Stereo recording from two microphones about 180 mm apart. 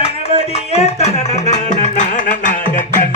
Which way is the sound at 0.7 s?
35° left (ahead or behind).